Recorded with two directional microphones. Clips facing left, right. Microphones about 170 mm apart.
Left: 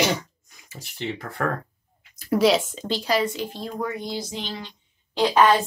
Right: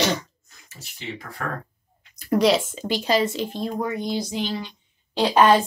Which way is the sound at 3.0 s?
25° right (ahead or behind).